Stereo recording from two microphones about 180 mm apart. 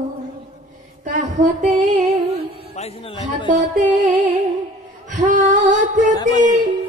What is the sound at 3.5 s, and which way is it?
Music, 45° right (ahead or behind).